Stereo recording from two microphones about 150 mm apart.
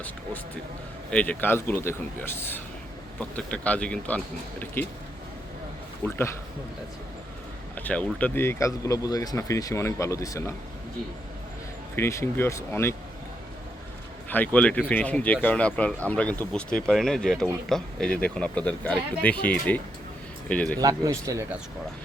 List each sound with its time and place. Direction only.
1.1 s speech: 10° left (ahead or behind)
6.0 s speech: 15° left (ahead or behind)
7.8 s speech: 10° left (ahead or behind)
11.9 s speech: 15° left (ahead or behind)
14.3 s speech: 10° left (ahead or behind)
20.7 s speech: 25° right (ahead or behind)